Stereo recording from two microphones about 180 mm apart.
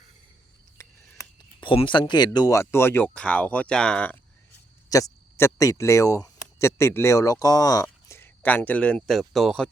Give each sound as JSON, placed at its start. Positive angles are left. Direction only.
{"t": 0.8, "sound": "a sound", "side_deg": 20}
{"t": 1.6, "sound": "speech", "side_deg": 30}
{"t": 4.9, "sound": "speech", "side_deg": 20}